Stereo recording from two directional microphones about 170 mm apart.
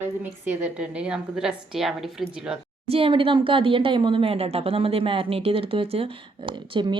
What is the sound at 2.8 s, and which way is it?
Speech, 35° right (ahead or behind).